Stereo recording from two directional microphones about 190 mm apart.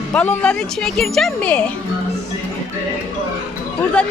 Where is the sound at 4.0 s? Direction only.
5° left (ahead or behind).